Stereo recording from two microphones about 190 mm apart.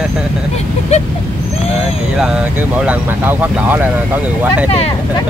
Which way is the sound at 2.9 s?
10° right (ahead or behind).